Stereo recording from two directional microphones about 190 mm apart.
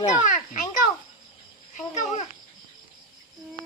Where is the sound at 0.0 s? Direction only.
40° left (ahead or behind).